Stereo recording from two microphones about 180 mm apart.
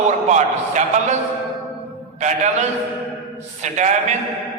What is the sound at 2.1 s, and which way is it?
A man's voice, 40° right (ahead or behind).